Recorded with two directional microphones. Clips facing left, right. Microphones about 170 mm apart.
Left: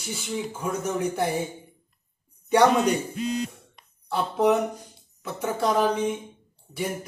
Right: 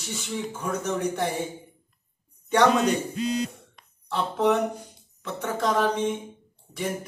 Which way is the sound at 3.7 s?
10° left (ahead or behind).